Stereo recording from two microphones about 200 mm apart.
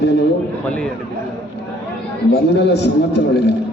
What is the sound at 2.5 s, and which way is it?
A man's voice, 60° left (ahead or behind).